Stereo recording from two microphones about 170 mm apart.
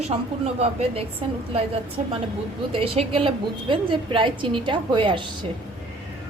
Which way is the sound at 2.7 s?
30° right (ahead or behind).